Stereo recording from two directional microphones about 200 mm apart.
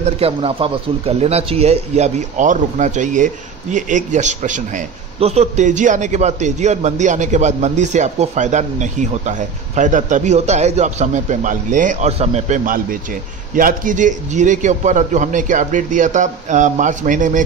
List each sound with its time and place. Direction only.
0.0 s a man's voice: 30° right (ahead or behind)